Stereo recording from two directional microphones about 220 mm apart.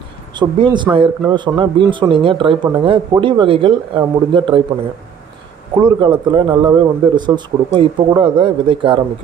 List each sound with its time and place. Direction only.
0.3 s speech: 20° right (ahead or behind)
5.8 s speech: 20° right (ahead or behind)